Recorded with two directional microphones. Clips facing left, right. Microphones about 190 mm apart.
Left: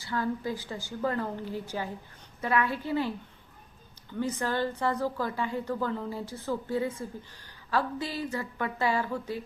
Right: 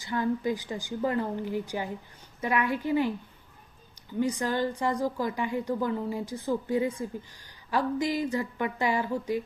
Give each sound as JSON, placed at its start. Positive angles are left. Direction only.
{"t": 0.0, "sound": "a woman's voice", "side_deg": -20}
{"t": 4.2, "sound": "a woman's voice", "side_deg": -15}